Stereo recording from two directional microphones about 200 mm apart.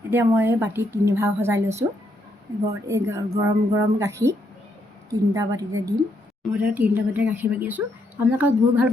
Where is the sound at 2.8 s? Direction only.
15° right (ahead or behind).